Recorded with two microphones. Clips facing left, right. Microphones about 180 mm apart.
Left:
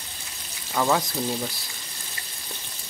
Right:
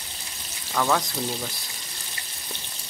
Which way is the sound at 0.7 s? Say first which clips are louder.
Left 1 dB; 15° left (ahead or behind).